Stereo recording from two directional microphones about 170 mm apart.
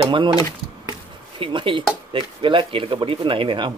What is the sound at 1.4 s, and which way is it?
Speech, 30° right (ahead or behind).